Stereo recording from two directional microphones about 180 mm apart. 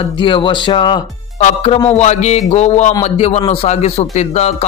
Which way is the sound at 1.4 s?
35° left (ahead or behind).